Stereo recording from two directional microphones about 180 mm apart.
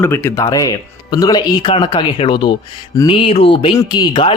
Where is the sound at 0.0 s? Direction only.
10° left (ahead or behind).